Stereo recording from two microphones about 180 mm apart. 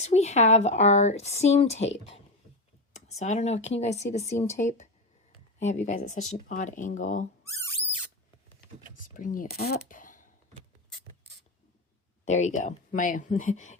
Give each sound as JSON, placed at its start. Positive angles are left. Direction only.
{"t": 0.0, "sound": "speech", "side_deg": 40}
{"t": 2.9, "sound": "speech", "side_deg": 40}
{"t": 9.0, "sound": "a sound", "side_deg": 50}
{"t": 12.2, "sound": "speech", "side_deg": 40}